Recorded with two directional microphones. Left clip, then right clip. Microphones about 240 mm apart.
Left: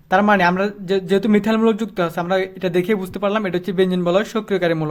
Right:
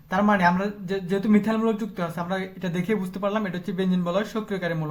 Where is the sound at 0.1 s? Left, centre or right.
Left.